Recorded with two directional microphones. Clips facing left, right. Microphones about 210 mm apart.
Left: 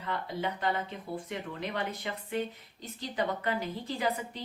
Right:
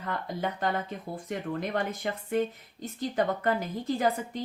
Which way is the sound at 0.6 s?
45° right (ahead or behind).